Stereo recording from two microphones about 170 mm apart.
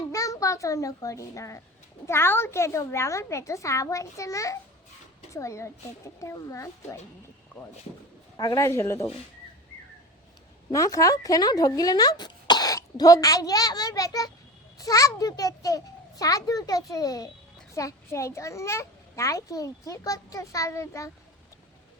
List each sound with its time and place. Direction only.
0.1 s a child's voice: 20° left (ahead or behind)
10.7 s a child's voice: 20° left (ahead or behind)